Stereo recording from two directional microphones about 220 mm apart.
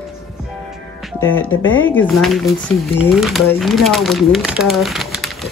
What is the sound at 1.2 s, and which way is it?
Speech, 65° left (ahead or behind).